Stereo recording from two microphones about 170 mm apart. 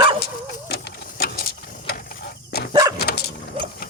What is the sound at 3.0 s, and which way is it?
Dog, 70° left (ahead or behind).